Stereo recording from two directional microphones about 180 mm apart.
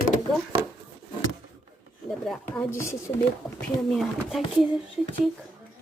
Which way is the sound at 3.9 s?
Centre (ahead or behind).